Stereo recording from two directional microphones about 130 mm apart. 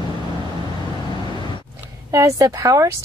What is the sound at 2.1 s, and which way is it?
Speech, 25° right (ahead or behind).